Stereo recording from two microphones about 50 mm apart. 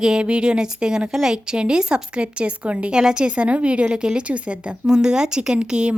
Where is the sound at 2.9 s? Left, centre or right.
Centre.